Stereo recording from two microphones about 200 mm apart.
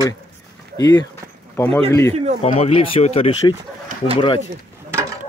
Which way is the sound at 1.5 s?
5° left (ahead or behind).